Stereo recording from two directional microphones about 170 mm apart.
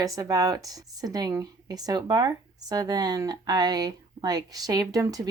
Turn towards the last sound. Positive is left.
turn(degrees=-20)  # may be behind; listen again after turning